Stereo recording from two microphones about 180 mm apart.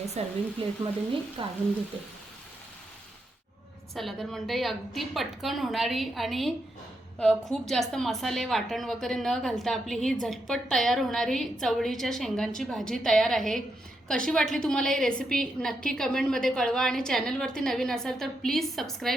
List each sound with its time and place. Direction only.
0.2 s speech: 35° right (ahead or behind)
1.4 s a woman's voice: 30° right (ahead or behind)
3.9 s speech: centre (ahead or behind)